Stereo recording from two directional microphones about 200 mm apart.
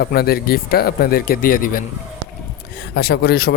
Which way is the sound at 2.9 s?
55° left (ahead or behind).